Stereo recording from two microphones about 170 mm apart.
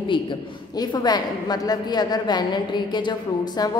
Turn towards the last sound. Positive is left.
turn(degrees=25)  # may be behind; listen again after turning